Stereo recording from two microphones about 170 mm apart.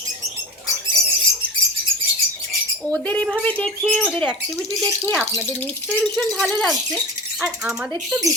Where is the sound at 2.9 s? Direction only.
10° left (ahead or behind).